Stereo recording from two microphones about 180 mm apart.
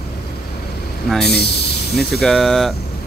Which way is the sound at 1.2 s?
65° left (ahead or behind).